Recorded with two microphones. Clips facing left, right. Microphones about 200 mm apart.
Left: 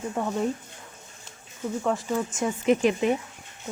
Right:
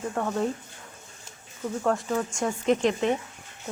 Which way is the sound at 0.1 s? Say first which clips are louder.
Even; 10° left (ahead or behind).